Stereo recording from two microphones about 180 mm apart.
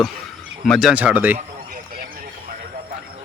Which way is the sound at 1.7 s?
50° right (ahead or behind).